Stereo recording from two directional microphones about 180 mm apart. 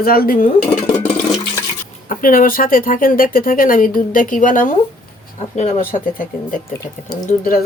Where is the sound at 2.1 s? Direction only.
50° left (ahead or behind).